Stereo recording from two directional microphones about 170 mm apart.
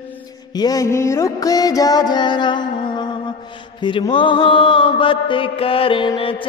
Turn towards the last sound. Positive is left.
turn(degrees=30)  # may be behind; listen again after turning